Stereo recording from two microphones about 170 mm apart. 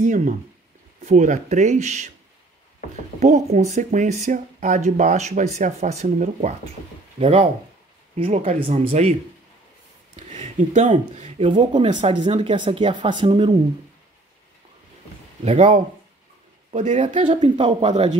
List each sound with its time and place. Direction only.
0.0 s speech: 50° right (ahead or behind)
3.2 s speech: 45° right (ahead or behind)
8.5 s speech: 35° right (ahead or behind)
10.1 s speech: 40° right (ahead or behind)
11.4 s speech: 30° right (ahead or behind)
15.4 s speech: 40° right (ahead or behind)
17.3 s speech: 35° right (ahead or behind)